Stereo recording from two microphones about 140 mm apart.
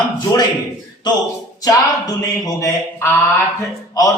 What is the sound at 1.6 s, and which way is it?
Speech, 25° left (ahead or behind).